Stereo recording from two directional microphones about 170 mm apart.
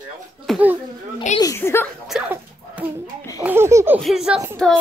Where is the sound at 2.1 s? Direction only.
5° right (ahead or behind).